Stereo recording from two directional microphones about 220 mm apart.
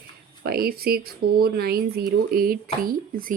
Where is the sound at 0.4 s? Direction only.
45° right (ahead or behind).